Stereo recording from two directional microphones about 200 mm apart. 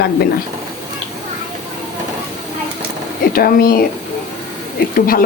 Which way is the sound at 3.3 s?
45° left (ahead or behind).